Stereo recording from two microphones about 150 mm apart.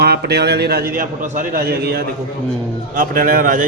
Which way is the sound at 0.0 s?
90° right.